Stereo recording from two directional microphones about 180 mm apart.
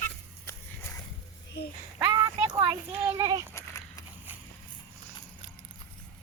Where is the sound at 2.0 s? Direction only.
20° right (ahead or behind).